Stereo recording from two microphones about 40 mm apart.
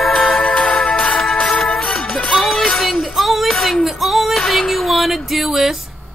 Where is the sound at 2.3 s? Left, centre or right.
Centre.